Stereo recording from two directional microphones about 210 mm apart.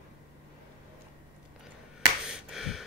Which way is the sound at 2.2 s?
Centre (ahead or behind).